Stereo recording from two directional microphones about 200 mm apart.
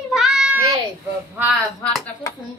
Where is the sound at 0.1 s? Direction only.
Centre (ahead or behind).